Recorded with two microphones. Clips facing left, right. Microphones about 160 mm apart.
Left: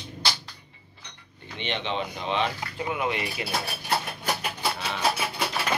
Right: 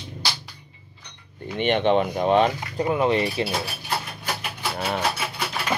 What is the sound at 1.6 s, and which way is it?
Speech, 50° right (ahead or behind).